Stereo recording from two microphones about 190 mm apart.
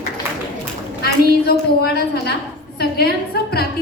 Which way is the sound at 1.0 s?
55° left (ahead or behind).